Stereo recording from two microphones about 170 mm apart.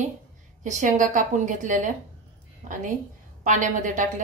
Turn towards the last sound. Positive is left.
turn(degrees=-50)  # may be behind; listen again after turning